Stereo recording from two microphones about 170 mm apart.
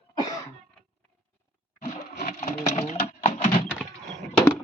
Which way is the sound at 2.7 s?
40° left (ahead or behind).